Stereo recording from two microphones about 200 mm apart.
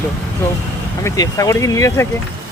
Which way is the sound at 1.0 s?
15° left (ahead or behind).